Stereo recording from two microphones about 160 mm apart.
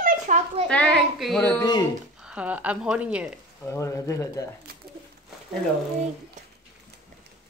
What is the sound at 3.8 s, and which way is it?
Speech, 20° left (ahead or behind).